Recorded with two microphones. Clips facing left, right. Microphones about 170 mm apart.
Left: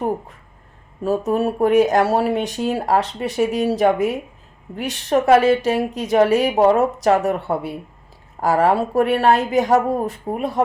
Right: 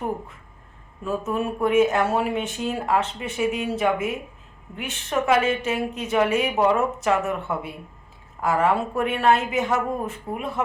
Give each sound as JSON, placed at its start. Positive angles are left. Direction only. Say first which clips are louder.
{"t": 1.0, "sound": "speech", "louder": "left 6 dB", "side_deg": 35}